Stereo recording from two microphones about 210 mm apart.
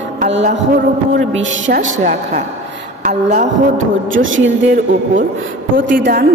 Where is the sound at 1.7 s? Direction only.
35° right (ahead or behind).